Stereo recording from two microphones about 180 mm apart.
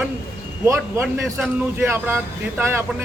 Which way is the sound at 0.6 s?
15° right (ahead or behind).